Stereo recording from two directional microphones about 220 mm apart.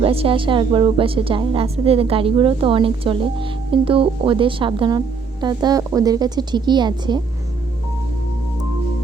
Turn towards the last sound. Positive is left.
turn(degrees=-20)  # may be behind; listen again after turning